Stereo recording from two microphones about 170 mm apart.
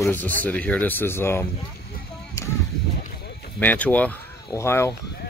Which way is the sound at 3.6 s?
10° left (ahead or behind).